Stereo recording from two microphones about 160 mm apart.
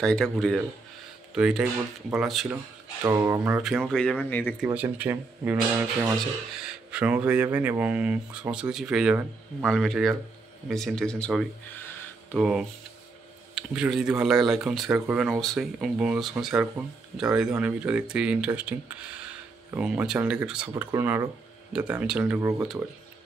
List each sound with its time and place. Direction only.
0.0 s speech: 5° left (ahead or behind)
1.3 s speech: 5° right (ahead or behind)
2.5 s speech: 20° right (ahead or behind)
3.6 s speech: centre (ahead or behind)
4.7 s speech: 10° right (ahead or behind); by 11.8 s 5° left (ahead or behind)
12.4 s speech: 5° right (ahead or behind)